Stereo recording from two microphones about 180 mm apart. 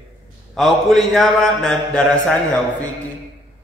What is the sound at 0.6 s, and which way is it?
A man's voice, centre (ahead or behind).